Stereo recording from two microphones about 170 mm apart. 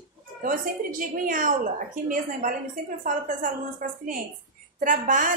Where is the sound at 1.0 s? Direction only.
55° right (ahead or behind).